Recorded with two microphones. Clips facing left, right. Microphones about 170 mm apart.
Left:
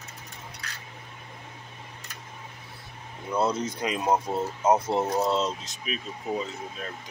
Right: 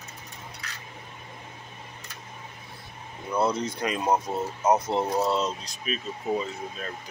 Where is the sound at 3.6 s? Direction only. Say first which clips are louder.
Even; 20° left (ahead or behind).